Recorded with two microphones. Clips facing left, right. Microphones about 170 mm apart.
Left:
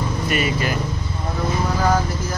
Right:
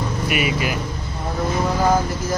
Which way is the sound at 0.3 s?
10° right (ahead or behind).